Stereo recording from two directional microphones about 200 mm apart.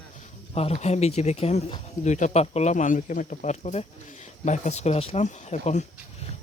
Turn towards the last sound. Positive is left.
turn(degrees=35)  # may be behind; listen again after turning